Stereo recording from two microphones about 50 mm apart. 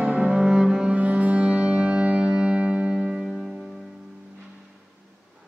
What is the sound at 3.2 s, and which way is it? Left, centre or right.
Music, centre.